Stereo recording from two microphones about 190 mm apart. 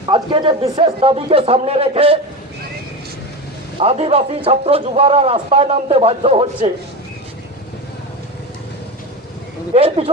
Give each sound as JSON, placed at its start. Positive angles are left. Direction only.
{"t": 0.1, "sound": "a man's voice", "side_deg": -25}
{"t": 3.8, "sound": "a man's voice", "side_deg": -30}
{"t": 9.7, "sound": "a man's voice", "side_deg": -30}